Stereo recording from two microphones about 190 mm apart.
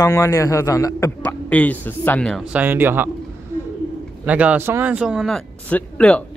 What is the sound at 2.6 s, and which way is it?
Speech, 10° right (ahead or behind).